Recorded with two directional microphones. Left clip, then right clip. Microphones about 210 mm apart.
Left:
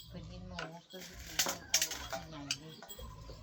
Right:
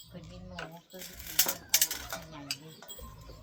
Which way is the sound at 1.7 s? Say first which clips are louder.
Right 5 dB; 45° right (ahead or behind).